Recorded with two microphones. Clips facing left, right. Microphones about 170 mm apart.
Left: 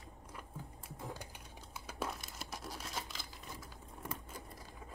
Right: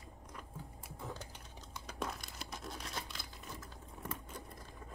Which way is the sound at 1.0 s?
15° left (ahead or behind).